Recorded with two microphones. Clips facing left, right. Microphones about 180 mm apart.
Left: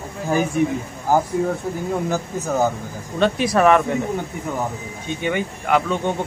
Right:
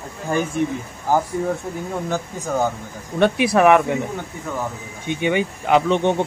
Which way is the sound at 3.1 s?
15° right (ahead or behind).